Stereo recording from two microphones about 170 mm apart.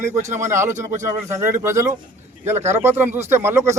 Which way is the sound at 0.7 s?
45° right (ahead or behind).